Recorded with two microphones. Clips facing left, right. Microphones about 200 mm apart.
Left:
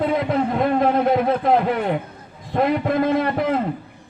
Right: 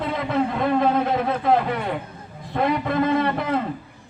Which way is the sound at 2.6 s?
50° left (ahead or behind).